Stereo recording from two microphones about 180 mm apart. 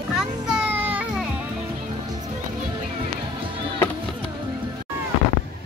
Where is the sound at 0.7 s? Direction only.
10° right (ahead or behind).